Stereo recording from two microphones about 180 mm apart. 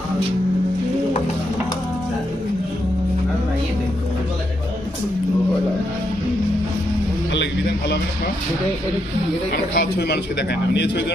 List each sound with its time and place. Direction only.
9.5 s a man's voice: 60° left (ahead or behind)